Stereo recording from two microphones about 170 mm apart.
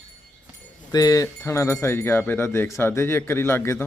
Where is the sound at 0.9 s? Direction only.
20° left (ahead or behind).